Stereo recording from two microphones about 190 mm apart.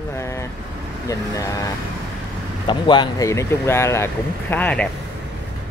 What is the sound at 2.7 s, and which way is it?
Speech, 25° left (ahead or behind).